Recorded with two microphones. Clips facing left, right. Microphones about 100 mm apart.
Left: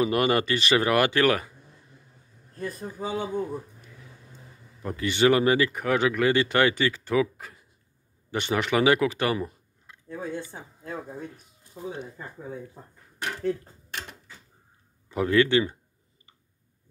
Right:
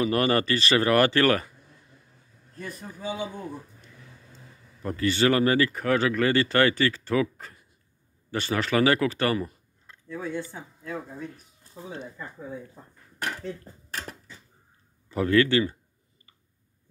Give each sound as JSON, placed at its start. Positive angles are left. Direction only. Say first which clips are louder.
{"t": 0.0, "sound": "speech", "louder": "even", "side_deg": 15}
{"t": 2.6, "sound": "speech", "louder": "left 3 dB", "side_deg": 40}
{"t": 4.8, "sound": "speech", "louder": "left 1 dB", "side_deg": 15}
{"t": 10.0, "sound": "speech", "louder": "right 1 dB", "side_deg": 35}
{"t": 13.8, "sound": "creak", "louder": "right 2 dB", "side_deg": -40}
{"t": 15.0, "sound": "speech", "louder": "even", "side_deg": 15}